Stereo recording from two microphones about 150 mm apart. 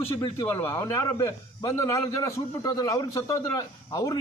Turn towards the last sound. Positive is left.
turn(degrees=25)  # may be behind; listen again after turning